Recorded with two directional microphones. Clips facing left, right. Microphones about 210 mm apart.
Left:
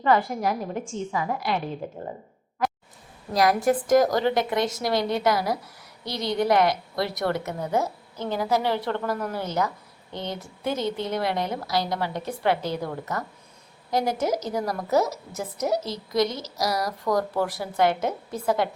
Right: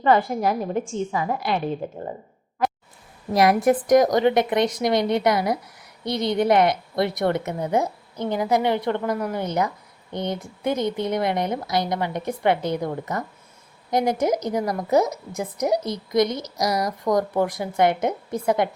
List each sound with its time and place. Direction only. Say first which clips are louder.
0.0 s speech: right 3 dB; 25° right (ahead or behind)
3.3 s speech: right 3 dB; 20° right (ahead or behind)